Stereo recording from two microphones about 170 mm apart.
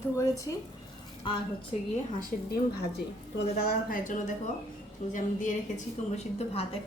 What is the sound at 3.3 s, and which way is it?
A woman's voice, 65° left (ahead or behind).